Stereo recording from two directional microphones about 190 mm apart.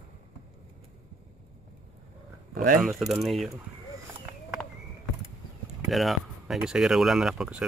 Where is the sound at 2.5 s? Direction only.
50° right (ahead or behind).